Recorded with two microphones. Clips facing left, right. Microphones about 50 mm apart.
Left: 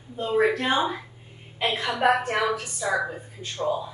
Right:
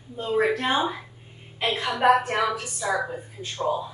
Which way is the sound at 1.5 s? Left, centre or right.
Centre.